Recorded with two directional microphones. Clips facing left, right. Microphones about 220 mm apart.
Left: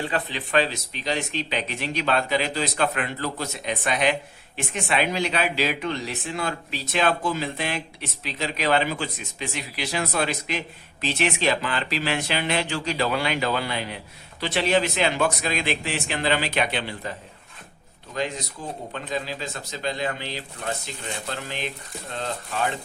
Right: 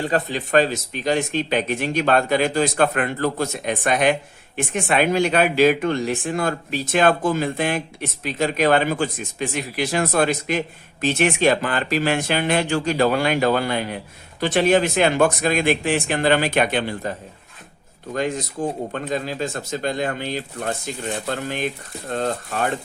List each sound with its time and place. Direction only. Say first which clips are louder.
0.0 s speech: right 6 dB; 45° right (ahead or behind)